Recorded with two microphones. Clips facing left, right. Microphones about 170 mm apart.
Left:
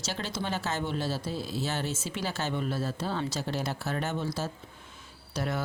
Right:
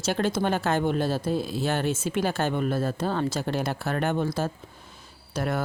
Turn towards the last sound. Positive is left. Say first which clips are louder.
# right 4 dB
turn(degrees=-50)  # may be behind; listen again after turning